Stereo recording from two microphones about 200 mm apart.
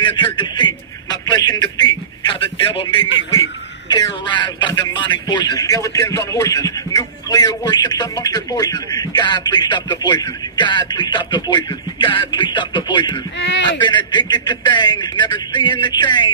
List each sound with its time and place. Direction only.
0.0 s radio: 25° left (ahead or behind)
3.9 s a man's voice: 20° left (ahead or behind)